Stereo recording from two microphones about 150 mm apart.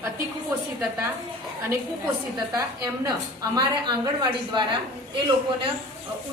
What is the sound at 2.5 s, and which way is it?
A woman's voice, 25° right (ahead or behind).